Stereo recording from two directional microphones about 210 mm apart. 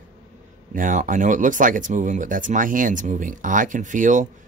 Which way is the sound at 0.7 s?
40° right (ahead or behind).